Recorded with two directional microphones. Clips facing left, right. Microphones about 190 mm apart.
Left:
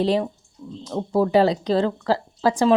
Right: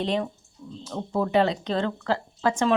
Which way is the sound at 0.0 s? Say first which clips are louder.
Left 6 dB; 35° left (ahead or behind).